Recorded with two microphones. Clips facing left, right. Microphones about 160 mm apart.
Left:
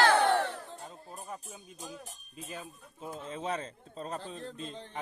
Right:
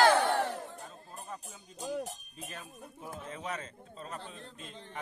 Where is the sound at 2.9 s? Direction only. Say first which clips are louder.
Left 4 dB; 25° left (ahead or behind).